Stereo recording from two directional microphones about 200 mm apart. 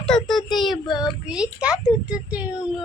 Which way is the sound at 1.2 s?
5° right (ahead or behind).